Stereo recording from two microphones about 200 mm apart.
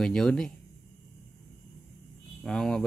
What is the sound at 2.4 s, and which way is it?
Speech, centre (ahead or behind).